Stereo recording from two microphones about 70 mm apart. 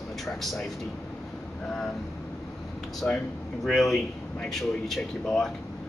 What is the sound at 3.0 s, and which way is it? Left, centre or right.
Speech, centre.